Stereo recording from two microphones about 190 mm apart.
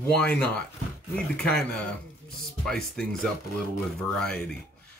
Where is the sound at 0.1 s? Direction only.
5° left (ahead or behind).